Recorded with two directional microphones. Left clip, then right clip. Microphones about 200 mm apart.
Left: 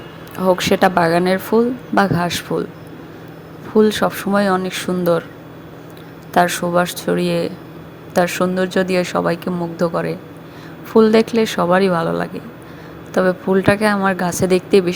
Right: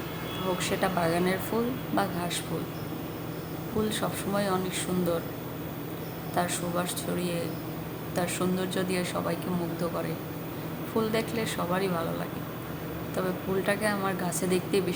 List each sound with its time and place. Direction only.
0.6 s speech: 45° left (ahead or behind)
3.8 s speech: 45° left (ahead or behind)
6.3 s speech: 45° left (ahead or behind)